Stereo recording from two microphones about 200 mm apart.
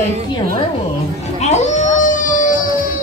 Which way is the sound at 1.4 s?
35° left (ahead or behind).